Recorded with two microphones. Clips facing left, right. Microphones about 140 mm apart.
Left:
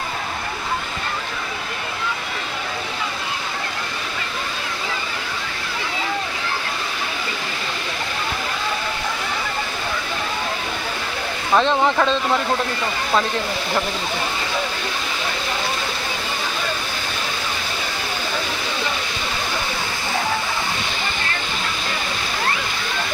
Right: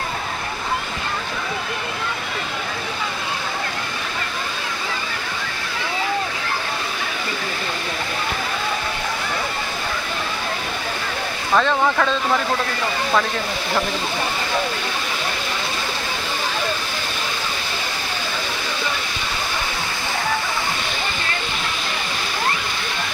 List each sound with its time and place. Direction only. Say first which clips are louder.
11.5 s speech: left 1 dB; 20° left (ahead or behind)